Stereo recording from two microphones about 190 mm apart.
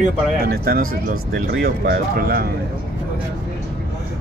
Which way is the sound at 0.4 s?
50° right (ahead or behind).